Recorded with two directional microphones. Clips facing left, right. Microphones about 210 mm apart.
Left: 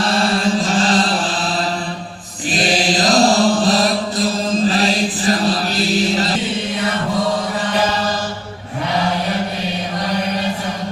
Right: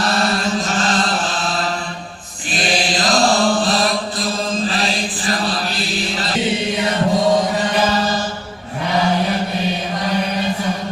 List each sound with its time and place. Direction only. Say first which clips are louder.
0.0 s mantra: left 2 dB; 30° left (ahead or behind)
2.5 s chant: left 3 dB; 40° left (ahead or behind)